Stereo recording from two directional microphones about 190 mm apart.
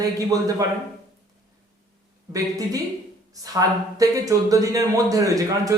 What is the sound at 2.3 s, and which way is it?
A man's voice, 20° right (ahead or behind).